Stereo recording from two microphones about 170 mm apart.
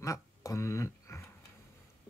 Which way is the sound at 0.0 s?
20° left (ahead or behind).